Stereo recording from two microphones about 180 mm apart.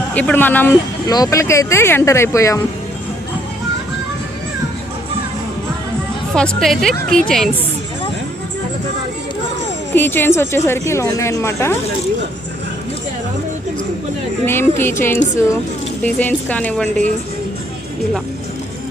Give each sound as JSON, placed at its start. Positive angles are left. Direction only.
{"t": 0.1, "sound": "speech", "side_deg": 10}
{"t": 1.0, "sound": "speech", "side_deg": 20}
{"t": 6.3, "sound": "a woman's voice", "side_deg": 5}
{"t": 9.9, "sound": "speech", "side_deg": 10}
{"t": 14.4, "sound": "speech", "side_deg": 10}